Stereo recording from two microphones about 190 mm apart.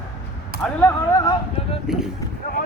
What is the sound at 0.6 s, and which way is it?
Speech, 10° left (ahead or behind).